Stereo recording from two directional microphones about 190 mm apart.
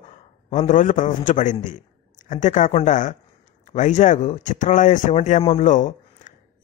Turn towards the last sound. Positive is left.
turn(degrees=40)  # may be behind; listen again after turning